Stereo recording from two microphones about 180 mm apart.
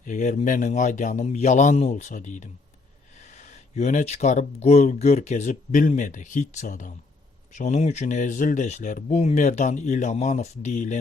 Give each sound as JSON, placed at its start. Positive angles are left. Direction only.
{"t": 0.0, "sound": "a man's voice", "side_deg": 45}